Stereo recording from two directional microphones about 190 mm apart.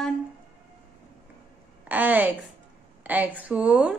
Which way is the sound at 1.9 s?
10° right (ahead or behind).